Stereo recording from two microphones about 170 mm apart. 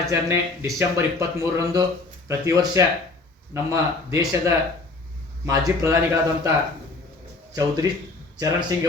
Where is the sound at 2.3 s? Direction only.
20° right (ahead or behind).